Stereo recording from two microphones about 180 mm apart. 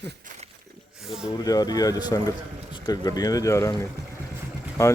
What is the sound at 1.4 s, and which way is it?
Speech, 20° left (ahead or behind).